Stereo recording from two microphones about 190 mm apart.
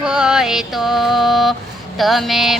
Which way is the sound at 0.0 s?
5° right (ahead or behind).